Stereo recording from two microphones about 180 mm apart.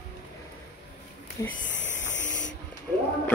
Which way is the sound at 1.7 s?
90° left.